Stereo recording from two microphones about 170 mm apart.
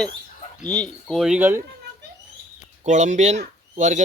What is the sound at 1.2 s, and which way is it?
Speech, 10° right (ahead or behind).